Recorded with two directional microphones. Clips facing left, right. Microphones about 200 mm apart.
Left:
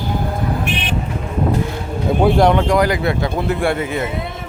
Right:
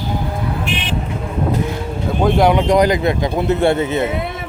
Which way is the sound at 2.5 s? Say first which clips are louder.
Right 2 dB; 20° right (ahead or behind).